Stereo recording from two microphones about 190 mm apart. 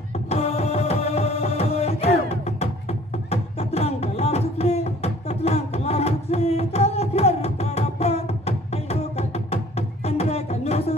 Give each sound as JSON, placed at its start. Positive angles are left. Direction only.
{"t": 0.3, "sound": "music", "side_deg": 35}